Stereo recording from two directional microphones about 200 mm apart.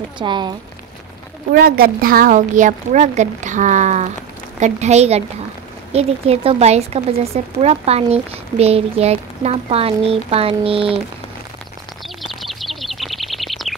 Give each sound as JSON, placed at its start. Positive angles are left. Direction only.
{"t": 0.2, "sound": "speech", "side_deg": -20}
{"t": 1.5, "sound": "a woman's voice", "side_deg": -50}
{"t": 12.2, "sound": "a sound", "side_deg": 0}